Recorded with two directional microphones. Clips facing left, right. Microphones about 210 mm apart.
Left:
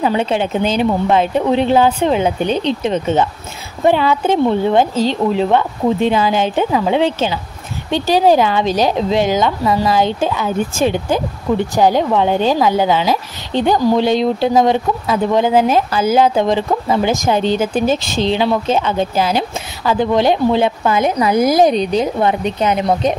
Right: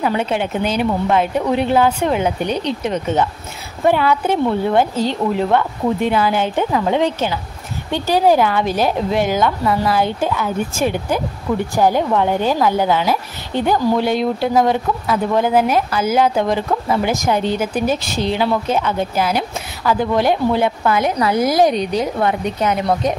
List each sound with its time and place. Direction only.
0.0 s a woman's voice: 25° left (ahead or behind)